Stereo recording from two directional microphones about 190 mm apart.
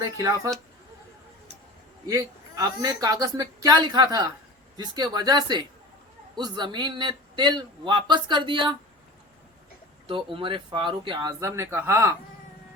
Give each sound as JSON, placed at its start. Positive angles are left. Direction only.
{"t": 0.0, "sound": "a man's voice", "side_deg": -20}
{"t": 2.0, "sound": "a man's voice", "side_deg": -20}
{"t": 10.3, "sound": "a man's voice", "side_deg": -25}